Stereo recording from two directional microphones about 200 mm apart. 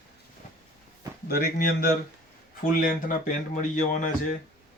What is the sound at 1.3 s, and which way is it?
Speech, 50° left (ahead or behind).